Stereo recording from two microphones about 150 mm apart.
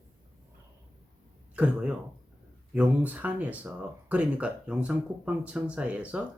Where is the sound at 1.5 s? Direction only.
10° right (ahead or behind).